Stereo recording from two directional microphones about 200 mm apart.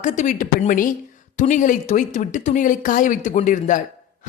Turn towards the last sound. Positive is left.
turn(degrees=40)  # may be behind; listen again after turning